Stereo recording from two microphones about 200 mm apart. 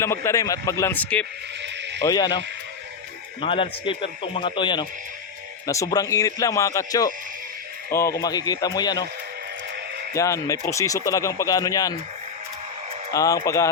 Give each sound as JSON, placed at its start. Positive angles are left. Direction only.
{"t": 0.0, "sound": "speech", "side_deg": 15}
{"t": 1.6, "sound": "a sound", "side_deg": -60}
{"t": 2.0, "sound": "a man's voice", "side_deg": 20}
{"t": 3.4, "sound": "a man's voice", "side_deg": 25}
{"t": 10.2, "sound": "speech", "side_deg": 15}
{"t": 13.1, "sound": "speech", "side_deg": 15}